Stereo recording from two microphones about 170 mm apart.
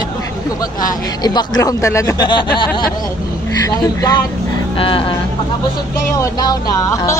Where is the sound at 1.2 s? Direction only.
25° left (ahead or behind).